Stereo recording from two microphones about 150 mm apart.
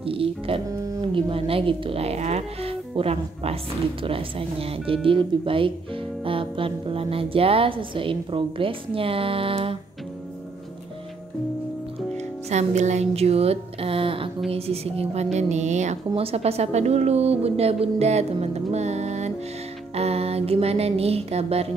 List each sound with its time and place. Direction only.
0.0 s a woman's voice: 40° right (ahead or behind)
12.4 s a woman's voice: 50° right (ahead or behind)
20.0 s music: 45° right (ahead or behind)